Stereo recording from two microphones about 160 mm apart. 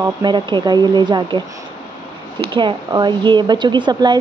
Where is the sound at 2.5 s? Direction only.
30° right (ahead or behind).